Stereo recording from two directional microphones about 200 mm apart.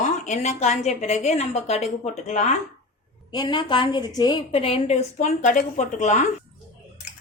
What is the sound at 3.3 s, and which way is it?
A woman's voice, 25° left (ahead or behind).